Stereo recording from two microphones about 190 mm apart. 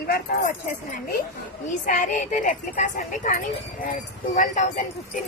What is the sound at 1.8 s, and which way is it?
A woman's voice, 45° left (ahead or behind).